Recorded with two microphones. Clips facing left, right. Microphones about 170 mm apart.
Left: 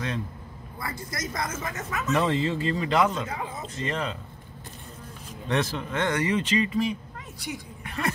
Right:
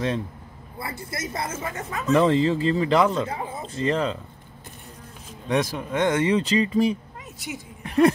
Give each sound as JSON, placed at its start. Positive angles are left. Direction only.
{"t": 0.7, "sound": "speech", "side_deg": -30}
{"t": 5.5, "sound": "speech", "side_deg": -10}
{"t": 7.3, "sound": "a woman's voice", "side_deg": -25}